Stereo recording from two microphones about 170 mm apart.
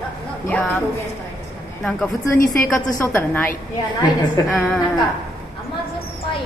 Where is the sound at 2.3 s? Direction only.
55° left (ahead or behind).